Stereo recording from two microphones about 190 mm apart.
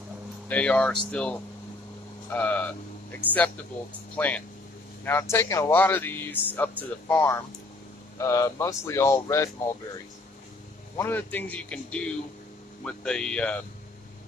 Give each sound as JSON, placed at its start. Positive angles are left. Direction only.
{"t": 0.5, "sound": "speech", "side_deg": 5}
{"t": 5.0, "sound": "speech", "side_deg": 15}
{"t": 11.0, "sound": "speech", "side_deg": 10}